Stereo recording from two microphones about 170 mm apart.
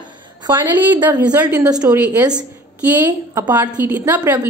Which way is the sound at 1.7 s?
20° right (ahead or behind).